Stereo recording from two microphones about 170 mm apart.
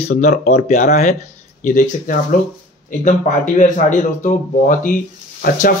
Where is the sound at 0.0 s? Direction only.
45° left (ahead or behind).